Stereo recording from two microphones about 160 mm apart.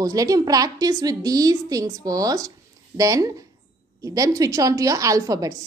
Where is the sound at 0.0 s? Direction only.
20° right (ahead or behind).